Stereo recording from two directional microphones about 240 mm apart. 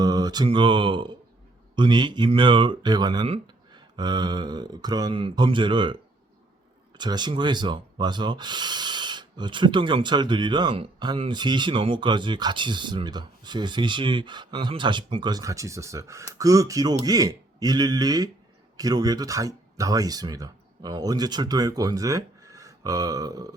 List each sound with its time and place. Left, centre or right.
0.0 s speech: centre